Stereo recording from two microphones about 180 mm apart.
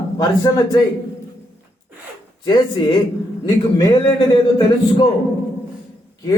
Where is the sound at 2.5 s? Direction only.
25° left (ahead or behind).